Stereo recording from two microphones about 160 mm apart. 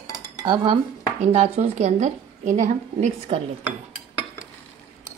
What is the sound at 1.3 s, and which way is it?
Speech, 40° right (ahead or behind).